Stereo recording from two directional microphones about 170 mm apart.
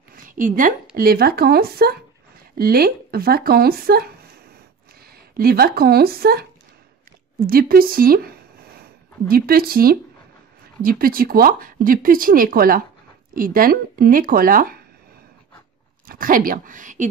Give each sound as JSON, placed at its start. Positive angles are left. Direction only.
{"t": 0.1, "sound": "a sound", "side_deg": -55}
{"t": 0.9, "sound": "speech", "side_deg": -60}
{"t": 5.4, "sound": "speech", "side_deg": -65}
{"t": 7.4, "sound": "speech", "side_deg": -60}
{"t": 9.3, "sound": "speech", "side_deg": -60}
{"t": 16.1, "sound": "a woman's voice", "side_deg": -55}